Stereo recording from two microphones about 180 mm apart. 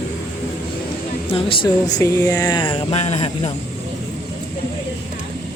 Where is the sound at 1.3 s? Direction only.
30° left (ahead or behind).